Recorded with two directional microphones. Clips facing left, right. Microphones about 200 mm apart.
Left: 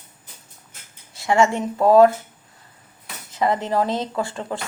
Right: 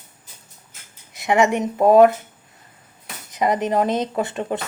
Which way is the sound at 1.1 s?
20° right (ahead or behind).